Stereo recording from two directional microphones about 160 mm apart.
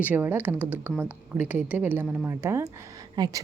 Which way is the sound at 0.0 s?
10° right (ahead or behind).